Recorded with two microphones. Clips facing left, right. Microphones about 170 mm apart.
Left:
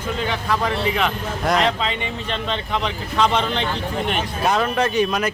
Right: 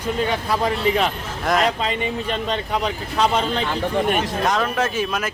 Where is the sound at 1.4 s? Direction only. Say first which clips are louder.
Even; 5° right (ahead or behind).